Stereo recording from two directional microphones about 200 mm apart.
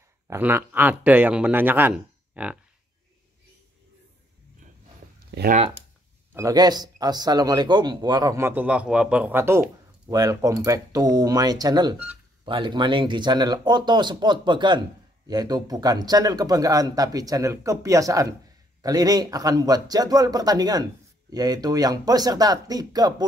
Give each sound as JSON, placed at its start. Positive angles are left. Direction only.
{"t": 0.3, "sound": "speech", "side_deg": -10}
{"t": 5.3, "sound": "speech", "side_deg": -60}
{"t": 6.3, "sound": "speech", "side_deg": -20}